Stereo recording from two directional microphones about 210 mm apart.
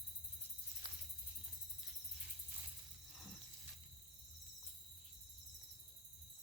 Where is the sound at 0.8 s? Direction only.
25° right (ahead or behind).